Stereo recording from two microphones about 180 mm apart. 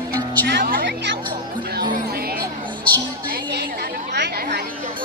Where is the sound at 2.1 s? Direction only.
55° right (ahead or behind).